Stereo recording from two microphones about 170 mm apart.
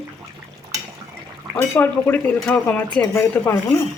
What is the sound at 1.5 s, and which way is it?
Speech, 10° left (ahead or behind).